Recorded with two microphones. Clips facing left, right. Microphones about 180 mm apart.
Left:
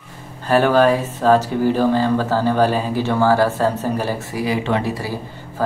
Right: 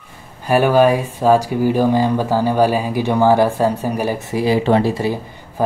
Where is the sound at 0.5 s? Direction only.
10° right (ahead or behind).